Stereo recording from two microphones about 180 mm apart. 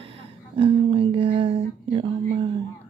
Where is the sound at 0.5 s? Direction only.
30° right (ahead or behind).